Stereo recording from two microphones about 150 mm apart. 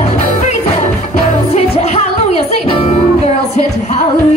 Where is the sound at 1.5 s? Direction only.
45° left (ahead or behind).